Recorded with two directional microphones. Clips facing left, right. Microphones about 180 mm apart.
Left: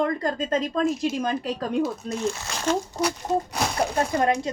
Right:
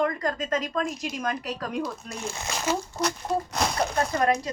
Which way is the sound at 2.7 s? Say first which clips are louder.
Left 4 dB; 5° right (ahead or behind).